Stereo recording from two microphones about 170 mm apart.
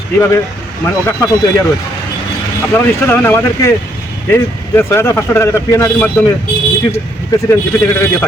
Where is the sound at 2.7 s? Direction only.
10° left (ahead or behind).